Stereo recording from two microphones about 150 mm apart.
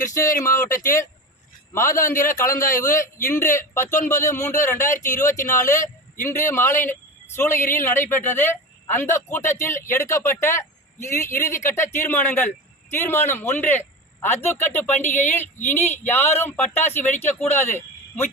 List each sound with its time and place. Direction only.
0.0 s speech: 20° left (ahead or behind)
2.0 s a man's voice: 60° left (ahead or behind)
2.4 s speech: 20° left (ahead or behind)